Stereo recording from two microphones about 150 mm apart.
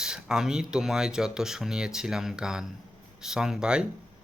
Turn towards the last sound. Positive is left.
turn(degrees=-5)  # may be behind; listen again after turning